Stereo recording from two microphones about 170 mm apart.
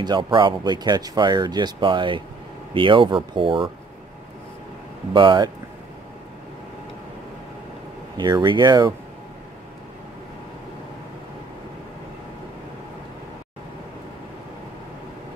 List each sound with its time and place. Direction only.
0.0 s speech: 25° right (ahead or behind)
5.1 s speech: 30° right (ahead or behind)
8.2 s speech: 25° right (ahead or behind)